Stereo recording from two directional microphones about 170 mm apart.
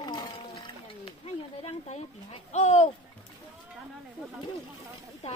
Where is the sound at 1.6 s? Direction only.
40° left (ahead or behind).